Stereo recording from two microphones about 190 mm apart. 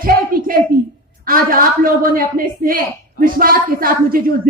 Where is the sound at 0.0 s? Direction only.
50° right (ahead or behind).